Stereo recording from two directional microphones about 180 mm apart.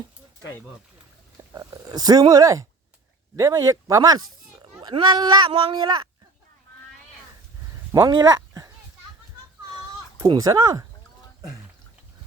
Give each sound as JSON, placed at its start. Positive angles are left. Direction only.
{"t": 1.5, "sound": "speech", "side_deg": -20}
{"t": 7.9, "sound": "speech", "side_deg": -20}
{"t": 9.7, "sound": "cat", "side_deg": -20}